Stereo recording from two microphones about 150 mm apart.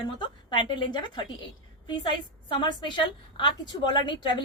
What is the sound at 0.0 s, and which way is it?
A woman's voice, 30° left (ahead or behind).